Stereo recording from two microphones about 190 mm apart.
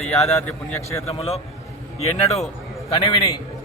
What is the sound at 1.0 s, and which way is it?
Speech, 30° left (ahead or behind).